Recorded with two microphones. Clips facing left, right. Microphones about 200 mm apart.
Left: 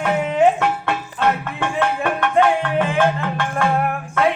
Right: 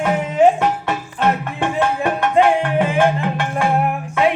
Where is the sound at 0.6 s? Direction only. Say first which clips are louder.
Right 1 dB; 20° right (ahead or behind).